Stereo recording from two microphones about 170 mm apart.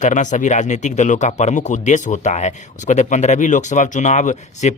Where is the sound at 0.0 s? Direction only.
45° left (ahead or behind).